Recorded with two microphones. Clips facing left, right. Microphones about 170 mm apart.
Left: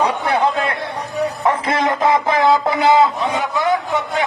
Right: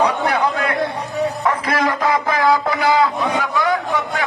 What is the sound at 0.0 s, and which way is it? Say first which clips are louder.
Chatter: even; 25° left (ahead or behind).